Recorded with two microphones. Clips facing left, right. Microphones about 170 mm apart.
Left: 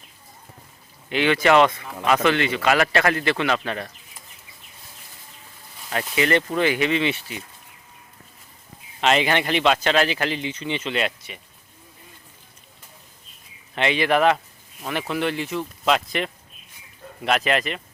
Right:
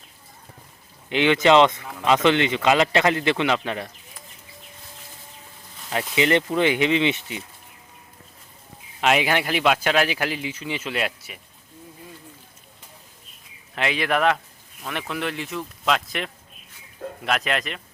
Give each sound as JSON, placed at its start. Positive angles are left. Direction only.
{"t": 1.1, "sound": "speech", "side_deg": -20}
{"t": 5.9, "sound": "speech", "side_deg": -20}
{"t": 9.0, "sound": "speech", "side_deg": -5}
{"t": 13.7, "sound": "speech", "side_deg": 0}